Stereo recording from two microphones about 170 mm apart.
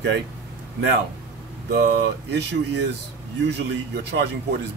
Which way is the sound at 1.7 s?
80° right.